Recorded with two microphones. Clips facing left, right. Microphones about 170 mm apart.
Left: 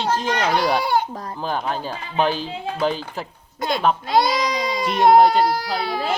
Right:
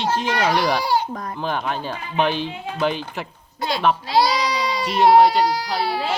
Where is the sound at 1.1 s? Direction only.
40° left (ahead or behind).